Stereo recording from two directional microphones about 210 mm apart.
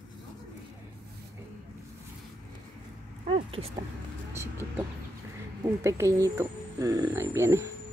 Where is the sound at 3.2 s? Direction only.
25° right (ahead or behind).